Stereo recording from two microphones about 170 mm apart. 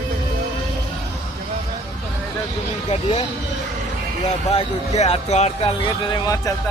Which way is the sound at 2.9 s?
35° left (ahead or behind).